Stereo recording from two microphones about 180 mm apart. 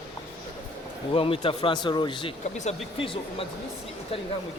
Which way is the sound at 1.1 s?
30° left (ahead or behind).